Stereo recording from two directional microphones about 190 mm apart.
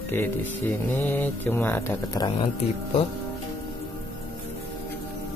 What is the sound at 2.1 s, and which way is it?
Speech, 25° left (ahead or behind).